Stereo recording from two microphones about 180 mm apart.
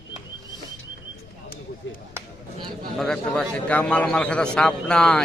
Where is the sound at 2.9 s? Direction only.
5° left (ahead or behind).